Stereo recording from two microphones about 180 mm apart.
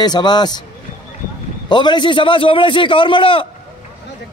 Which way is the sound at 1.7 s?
25° left (ahead or behind).